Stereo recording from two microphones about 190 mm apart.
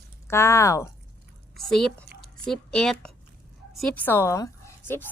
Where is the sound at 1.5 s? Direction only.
Centre (ahead or behind).